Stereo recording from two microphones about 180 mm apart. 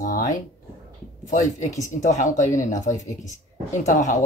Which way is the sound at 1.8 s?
45° left (ahead or behind).